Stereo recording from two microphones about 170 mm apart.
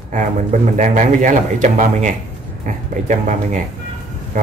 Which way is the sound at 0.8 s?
45° right (ahead or behind).